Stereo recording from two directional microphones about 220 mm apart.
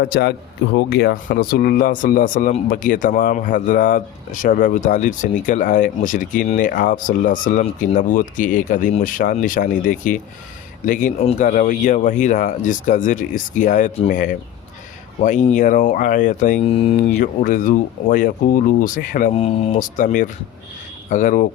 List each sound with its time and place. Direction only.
0.0 s speech: 45° left (ahead or behind)